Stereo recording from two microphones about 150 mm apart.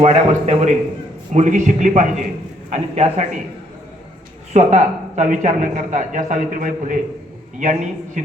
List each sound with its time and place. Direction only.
0.0 s a man's voice: 50° right (ahead or behind)
4.5 s speech: 50° right (ahead or behind)